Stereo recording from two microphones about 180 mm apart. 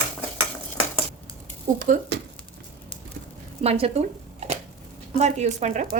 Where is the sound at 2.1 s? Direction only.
75° right (ahead or behind).